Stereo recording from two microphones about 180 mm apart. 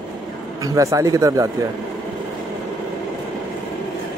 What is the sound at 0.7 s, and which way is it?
Speech, 20° right (ahead or behind).